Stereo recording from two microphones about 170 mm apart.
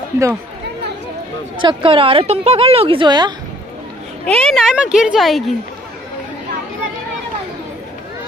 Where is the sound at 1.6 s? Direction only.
30° right (ahead or behind).